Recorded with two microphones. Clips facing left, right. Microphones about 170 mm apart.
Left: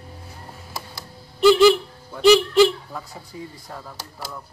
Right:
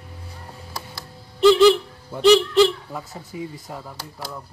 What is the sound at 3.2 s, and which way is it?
Speech, 20° right (ahead or behind).